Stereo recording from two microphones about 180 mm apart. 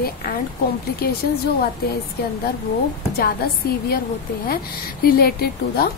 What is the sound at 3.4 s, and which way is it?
A woman's voice, 60° left (ahead or behind).